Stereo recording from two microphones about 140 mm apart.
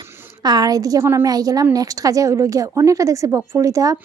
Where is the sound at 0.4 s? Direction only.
30° right (ahead or behind).